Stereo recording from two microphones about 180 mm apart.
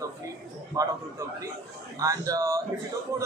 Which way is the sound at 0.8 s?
20° right (ahead or behind).